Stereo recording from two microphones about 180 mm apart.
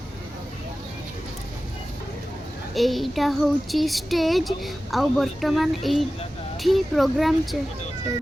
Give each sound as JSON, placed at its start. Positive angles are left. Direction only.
{"t": 2.7, "sound": "speech", "side_deg": 0}